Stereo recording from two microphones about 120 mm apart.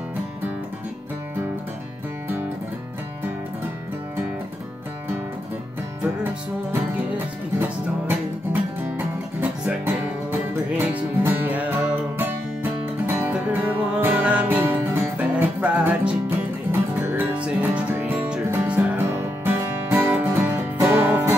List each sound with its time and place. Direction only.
8.9 s music: 15° right (ahead or behind)